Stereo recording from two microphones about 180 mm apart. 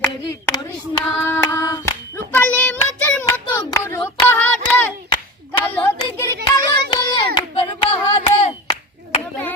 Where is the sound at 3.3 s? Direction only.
20° left (ahead or behind).